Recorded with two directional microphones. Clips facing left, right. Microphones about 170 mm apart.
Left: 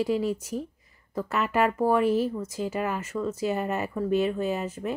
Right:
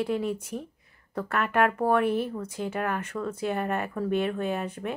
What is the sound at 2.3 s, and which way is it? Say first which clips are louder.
Speech: left 2 dB; 5° left (ahead or behind).